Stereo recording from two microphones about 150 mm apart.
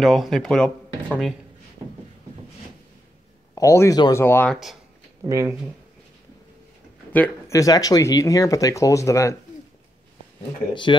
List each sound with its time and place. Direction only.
0.0 s speech: centre (ahead or behind)
3.5 s a man's voice: 20° left (ahead or behind)
5.2 s speech: 15° right (ahead or behind)
7.1 s speech: 15° left (ahead or behind)
10.7 s speech: 30° left (ahead or behind)